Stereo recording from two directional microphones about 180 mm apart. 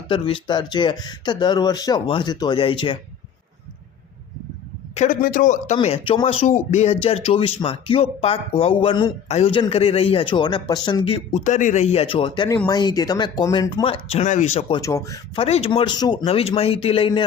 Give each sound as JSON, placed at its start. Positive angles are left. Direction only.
{"t": 0.1, "sound": "speech", "side_deg": 25}
{"t": 4.9, "sound": "a man's voice", "side_deg": 50}
{"t": 5.7, "sound": "speech", "side_deg": 30}
{"t": 14.8, "sound": "speech", "side_deg": 15}
{"t": 15.4, "sound": "speech", "side_deg": 35}